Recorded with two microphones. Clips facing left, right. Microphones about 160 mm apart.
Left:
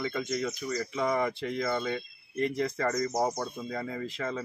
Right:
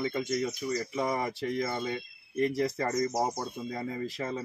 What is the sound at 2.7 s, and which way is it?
Speech, 20° right (ahead or behind).